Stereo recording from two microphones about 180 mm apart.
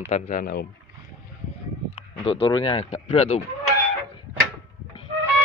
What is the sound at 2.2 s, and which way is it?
Speech, 30° left (ahead or behind).